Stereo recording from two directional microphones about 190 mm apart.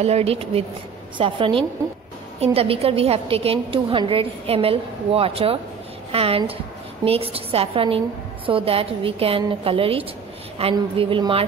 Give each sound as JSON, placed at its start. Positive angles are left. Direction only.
{"t": 0.0, "sound": "a woman's voice", "side_deg": -35}